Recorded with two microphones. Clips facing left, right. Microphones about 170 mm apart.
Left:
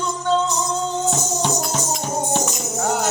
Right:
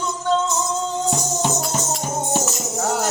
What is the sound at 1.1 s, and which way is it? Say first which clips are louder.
Music: even; 5° right (ahead or behind).